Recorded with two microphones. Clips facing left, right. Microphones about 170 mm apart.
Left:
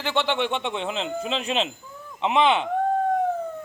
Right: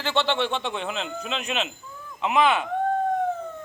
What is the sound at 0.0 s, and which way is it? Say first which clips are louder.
A man's voice: even; 15° left (ahead or behind).